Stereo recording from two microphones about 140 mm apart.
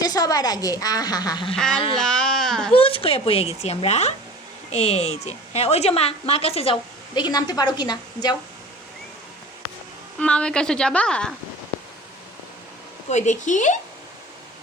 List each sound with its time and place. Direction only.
0.0 s a woman's voice: 25° left (ahead or behind)
1.5 s speech: 5° left (ahead or behind)
2.7 s a woman's voice: 40° left (ahead or behind)
7.1 s a woman's voice: 30° left (ahead or behind)
10.2 s speech: 10° left (ahead or behind)
13.1 s speech: 60° left (ahead or behind)